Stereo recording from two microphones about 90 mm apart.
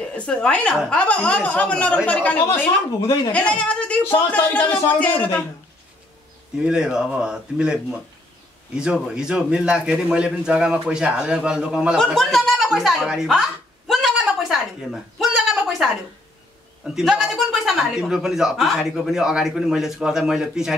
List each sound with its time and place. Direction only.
0.1 s speech: 10° left (ahead or behind)
3.3 s speech: 15° left (ahead or behind)
6.6 s a man's voice: 10° right (ahead or behind)
12.0 s a sound: centre (ahead or behind)
16.8 s a man's voice: 5° right (ahead or behind)